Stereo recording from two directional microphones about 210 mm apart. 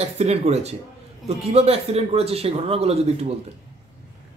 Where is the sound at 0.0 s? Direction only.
30° right (ahead or behind).